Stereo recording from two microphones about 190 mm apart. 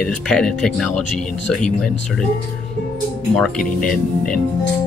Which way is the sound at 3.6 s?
45° left (ahead or behind).